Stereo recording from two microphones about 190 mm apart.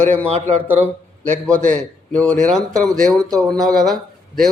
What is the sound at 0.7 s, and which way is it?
Speech, 40° right (ahead or behind).